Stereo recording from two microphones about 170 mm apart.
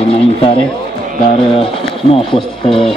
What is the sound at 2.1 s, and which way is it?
Speech, 30° left (ahead or behind).